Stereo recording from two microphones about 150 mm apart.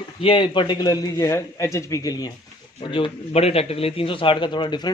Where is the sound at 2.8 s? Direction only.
35° left (ahead or behind).